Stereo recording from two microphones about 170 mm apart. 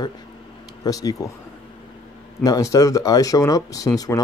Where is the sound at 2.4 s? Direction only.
20° left (ahead or behind).